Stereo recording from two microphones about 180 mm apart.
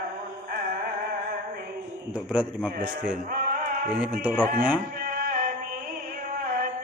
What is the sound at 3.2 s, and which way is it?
Music, 50° right (ahead or behind).